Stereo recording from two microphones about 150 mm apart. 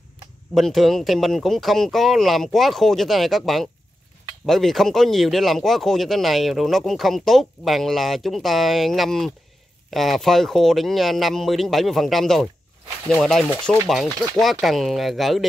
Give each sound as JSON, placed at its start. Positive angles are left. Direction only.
{"t": 0.6, "sound": "speech", "side_deg": 0}